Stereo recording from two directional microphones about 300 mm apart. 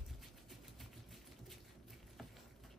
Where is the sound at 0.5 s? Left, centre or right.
Centre.